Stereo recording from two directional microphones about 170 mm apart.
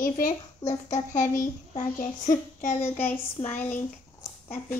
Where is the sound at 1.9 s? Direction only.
45° left (ahead or behind).